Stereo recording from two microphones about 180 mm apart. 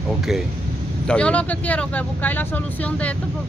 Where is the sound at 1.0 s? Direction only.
5° left (ahead or behind).